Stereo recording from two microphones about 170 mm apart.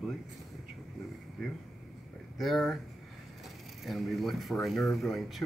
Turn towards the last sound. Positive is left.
turn(degrees=0)  # may be behind; listen again after turning